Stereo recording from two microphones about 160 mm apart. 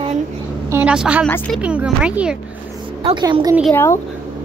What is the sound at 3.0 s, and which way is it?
Speech, 30° right (ahead or behind).